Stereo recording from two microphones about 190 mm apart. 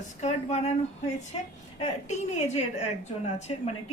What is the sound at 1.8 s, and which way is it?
A woman's voice, 35° left (ahead or behind).